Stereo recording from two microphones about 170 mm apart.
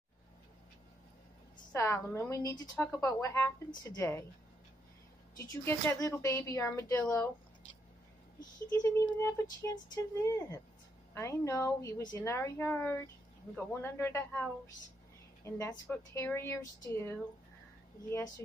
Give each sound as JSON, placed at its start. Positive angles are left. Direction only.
{"t": 1.7, "sound": "a woman's voice", "side_deg": 15}
{"t": 5.4, "sound": "a woman's voice", "side_deg": 15}
{"t": 8.8, "sound": "a woman's voice", "side_deg": 15}
{"t": 15.4, "sound": "a woman's voice", "side_deg": 15}